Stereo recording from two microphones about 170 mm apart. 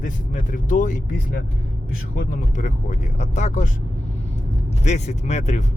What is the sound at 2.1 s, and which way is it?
Speech, 45° left (ahead or behind).